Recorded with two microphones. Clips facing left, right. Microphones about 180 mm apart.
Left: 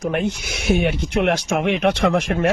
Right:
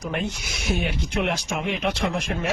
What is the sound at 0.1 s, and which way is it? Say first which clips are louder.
Speech: left 6 dB; 65° left (ahead or behind).